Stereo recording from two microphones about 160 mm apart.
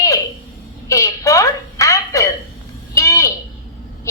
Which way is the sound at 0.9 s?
20° left (ahead or behind).